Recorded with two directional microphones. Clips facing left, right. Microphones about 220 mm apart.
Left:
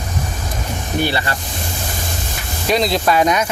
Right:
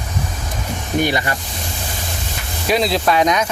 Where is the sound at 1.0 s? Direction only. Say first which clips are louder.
Right 1 dB; 15° right (ahead or behind).